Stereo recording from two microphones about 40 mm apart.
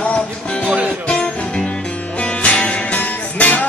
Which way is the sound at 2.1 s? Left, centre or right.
Left.